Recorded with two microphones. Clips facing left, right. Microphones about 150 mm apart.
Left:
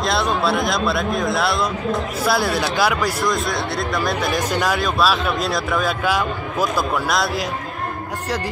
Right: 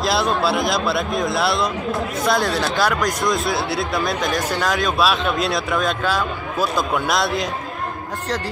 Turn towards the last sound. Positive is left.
turn(degrees=0)  # may be behind; listen again after turning